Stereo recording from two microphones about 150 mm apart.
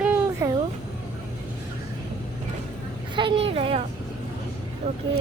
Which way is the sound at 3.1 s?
35° right (ahead or behind).